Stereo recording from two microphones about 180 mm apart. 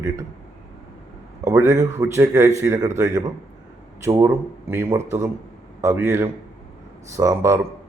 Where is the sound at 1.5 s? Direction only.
15° right (ahead or behind).